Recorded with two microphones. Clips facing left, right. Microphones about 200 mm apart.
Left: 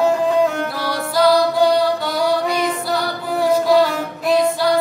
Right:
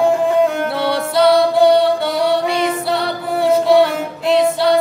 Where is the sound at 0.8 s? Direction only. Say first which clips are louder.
Right 2 dB; 25° right (ahead or behind).